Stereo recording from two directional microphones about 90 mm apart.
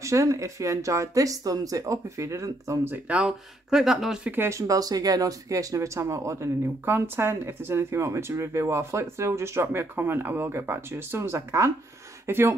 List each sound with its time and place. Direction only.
0.0 s speech: 35° right (ahead or behind)
2.9 s speech: 15° right (ahead or behind)
4.3 s speech: 30° right (ahead or behind)